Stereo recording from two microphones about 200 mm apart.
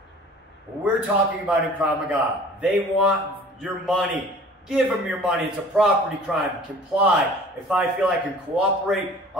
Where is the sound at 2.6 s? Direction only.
Centre (ahead or behind).